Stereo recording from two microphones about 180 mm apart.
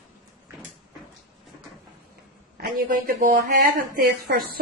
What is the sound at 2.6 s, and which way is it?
A man's voice, 45° right (ahead or behind).